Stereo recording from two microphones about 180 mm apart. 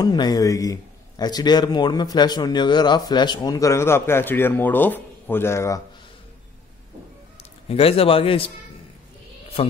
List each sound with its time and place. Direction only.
0.0 s a man's voice: 20° left (ahead or behind)
7.6 s a man's voice: 35° left (ahead or behind)